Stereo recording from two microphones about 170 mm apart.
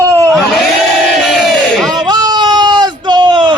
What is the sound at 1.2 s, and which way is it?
Crowd, centre (ahead or behind).